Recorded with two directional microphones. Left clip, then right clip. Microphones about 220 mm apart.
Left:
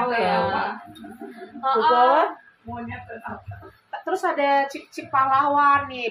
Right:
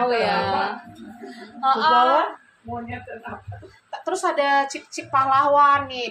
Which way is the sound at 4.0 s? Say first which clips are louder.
Right 1 dB; 25° right (ahead or behind).